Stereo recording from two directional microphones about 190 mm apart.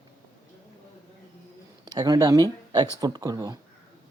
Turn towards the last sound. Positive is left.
turn(degrees=-20)  # may be behind; listen again after turning